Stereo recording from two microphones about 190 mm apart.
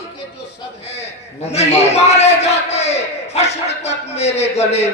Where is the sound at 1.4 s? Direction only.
35° left (ahead or behind).